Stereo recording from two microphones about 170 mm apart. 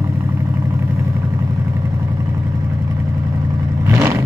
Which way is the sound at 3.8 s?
15° right (ahead or behind).